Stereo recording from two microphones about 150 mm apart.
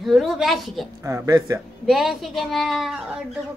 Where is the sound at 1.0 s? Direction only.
25° right (ahead or behind).